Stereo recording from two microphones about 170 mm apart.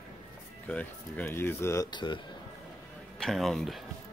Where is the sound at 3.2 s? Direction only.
Centre (ahead or behind).